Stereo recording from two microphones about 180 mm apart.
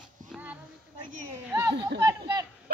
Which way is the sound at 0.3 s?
10° right (ahead or behind).